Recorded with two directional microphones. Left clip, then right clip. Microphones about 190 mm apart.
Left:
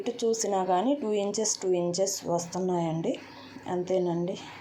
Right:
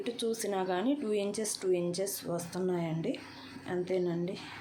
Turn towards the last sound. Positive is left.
turn(degrees=5)  # may be behind; listen again after turning